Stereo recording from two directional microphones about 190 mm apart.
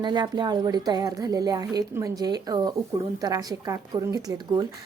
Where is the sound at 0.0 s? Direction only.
25° right (ahead or behind).